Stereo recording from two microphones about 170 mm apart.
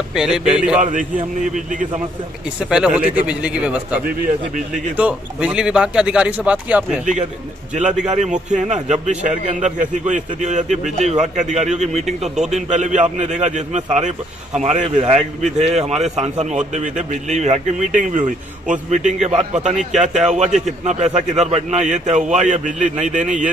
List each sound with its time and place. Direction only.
0.1 s a man's voice: 5° right (ahead or behind)
2.7 s a man's voice: 5° right (ahead or behind)
8.1 s a man's voice: 45° right (ahead or behind)